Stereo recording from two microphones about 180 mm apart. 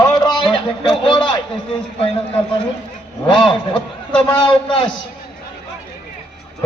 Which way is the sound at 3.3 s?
25° left (ahead or behind).